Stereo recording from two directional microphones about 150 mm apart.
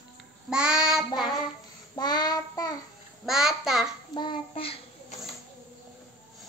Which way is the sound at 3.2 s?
5° right (ahead or behind).